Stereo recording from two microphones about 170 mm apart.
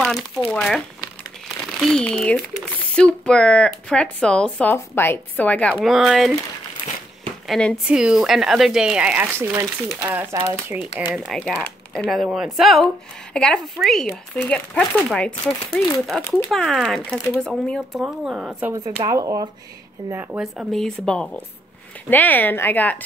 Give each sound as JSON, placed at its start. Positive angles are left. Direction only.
{"t": 0.5, "sound": "speech", "side_deg": 5}
{"t": 7.4, "sound": "speech", "side_deg": 0}
{"t": 19.0, "sound": "speech", "side_deg": -20}
{"t": 20.1, "sound": "speech", "side_deg": -10}